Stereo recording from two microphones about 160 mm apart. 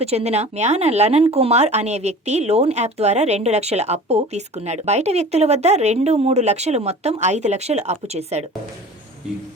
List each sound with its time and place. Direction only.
0.0 s speech: 40° right (ahead or behind)